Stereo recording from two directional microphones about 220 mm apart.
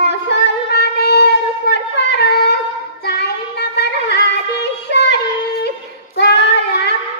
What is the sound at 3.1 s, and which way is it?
Music, 50° left (ahead or behind).